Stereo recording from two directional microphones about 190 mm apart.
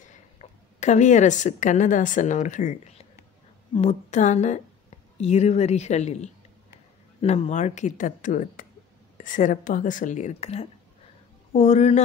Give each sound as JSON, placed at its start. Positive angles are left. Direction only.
{"t": 0.1, "sound": "a woman's voice", "side_deg": 40}